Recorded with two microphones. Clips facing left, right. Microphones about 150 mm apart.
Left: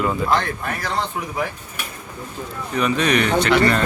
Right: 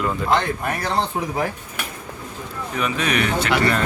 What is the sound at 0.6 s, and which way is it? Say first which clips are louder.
Speech: right 2 dB; 25° right (ahead or behind).